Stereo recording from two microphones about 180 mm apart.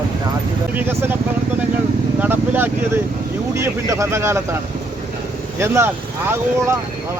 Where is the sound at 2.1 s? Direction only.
10° right (ahead or behind).